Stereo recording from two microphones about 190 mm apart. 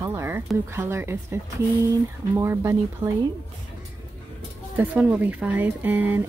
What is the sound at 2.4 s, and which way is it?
Speech, 15° right (ahead or behind).